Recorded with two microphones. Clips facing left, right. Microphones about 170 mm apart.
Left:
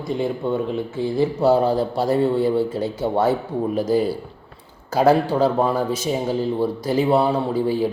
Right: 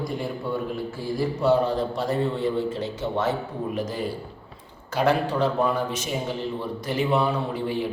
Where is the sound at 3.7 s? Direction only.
35° left (ahead or behind).